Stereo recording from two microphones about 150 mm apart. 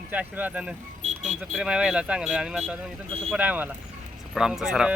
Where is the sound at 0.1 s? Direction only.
10° right (ahead or behind).